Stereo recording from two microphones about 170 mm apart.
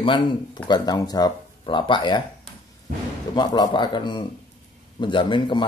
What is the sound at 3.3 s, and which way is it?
A man's voice, 25° left (ahead or behind).